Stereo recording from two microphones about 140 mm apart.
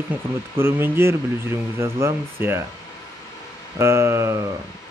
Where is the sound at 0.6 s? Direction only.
15° right (ahead or behind).